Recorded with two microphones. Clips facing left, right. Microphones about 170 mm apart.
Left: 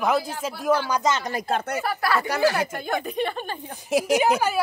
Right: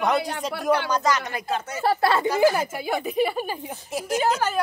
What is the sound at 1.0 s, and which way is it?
Speech, 25° left (ahead or behind).